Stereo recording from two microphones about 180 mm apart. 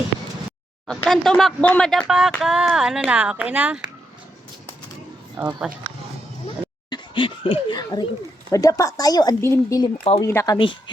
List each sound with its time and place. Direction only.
0.9 s speech: centre (ahead or behind)
5.4 s speech: 5° right (ahead or behind)
6.9 s speech: 25° left (ahead or behind)